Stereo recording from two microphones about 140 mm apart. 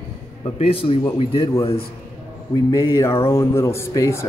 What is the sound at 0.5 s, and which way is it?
Speech, 45° left (ahead or behind).